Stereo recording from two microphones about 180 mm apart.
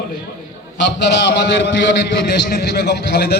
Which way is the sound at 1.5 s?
85° left.